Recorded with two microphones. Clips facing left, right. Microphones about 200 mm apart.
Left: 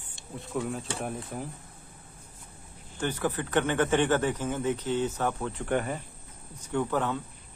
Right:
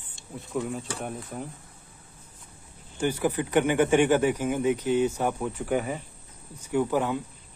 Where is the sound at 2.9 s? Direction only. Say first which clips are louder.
Right 4 dB; 10° right (ahead or behind).